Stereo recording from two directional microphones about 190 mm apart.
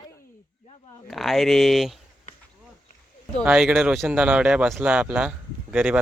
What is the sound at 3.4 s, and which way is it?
Speech, 5° right (ahead or behind).